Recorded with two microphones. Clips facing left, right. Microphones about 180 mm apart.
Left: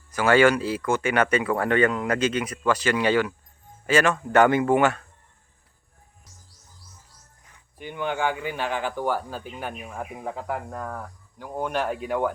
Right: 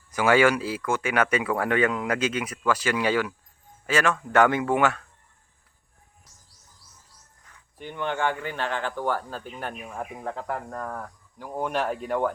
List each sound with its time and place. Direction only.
0.1 s speech: 15° right (ahead or behind)
7.8 s speech: 5° left (ahead or behind)